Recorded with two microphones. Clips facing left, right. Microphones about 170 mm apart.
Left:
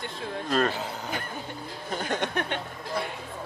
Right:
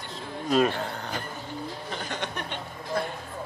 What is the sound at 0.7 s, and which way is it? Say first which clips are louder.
Speech: right 1 dB; 5° left (ahead or behind).